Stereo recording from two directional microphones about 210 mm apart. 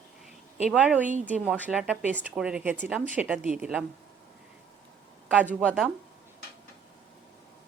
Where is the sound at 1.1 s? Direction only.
35° right (ahead or behind).